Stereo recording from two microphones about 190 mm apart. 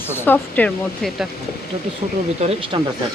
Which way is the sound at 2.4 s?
25° right (ahead or behind).